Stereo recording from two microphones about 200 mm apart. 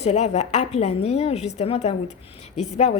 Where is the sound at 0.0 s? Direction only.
35° left (ahead or behind).